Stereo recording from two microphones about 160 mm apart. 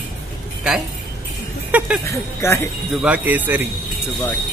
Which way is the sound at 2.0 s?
15° left (ahead or behind).